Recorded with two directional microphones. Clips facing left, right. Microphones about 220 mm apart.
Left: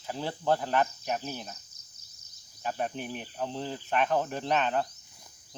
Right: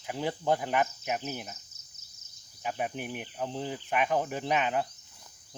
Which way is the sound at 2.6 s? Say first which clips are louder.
Left 1 dB; 10° right (ahead or behind).